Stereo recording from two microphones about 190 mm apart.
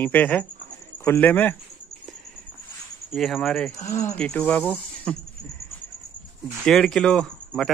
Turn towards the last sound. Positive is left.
turn(degrees=5)  # may be behind; listen again after turning